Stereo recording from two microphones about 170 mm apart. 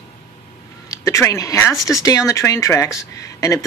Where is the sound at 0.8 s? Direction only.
20° left (ahead or behind).